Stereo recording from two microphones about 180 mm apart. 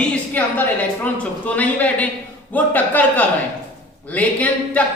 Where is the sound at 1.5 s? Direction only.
10° left (ahead or behind).